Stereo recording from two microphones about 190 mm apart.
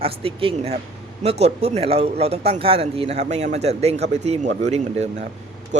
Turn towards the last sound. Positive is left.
turn(degrees=-40)  # may be behind; listen again after turning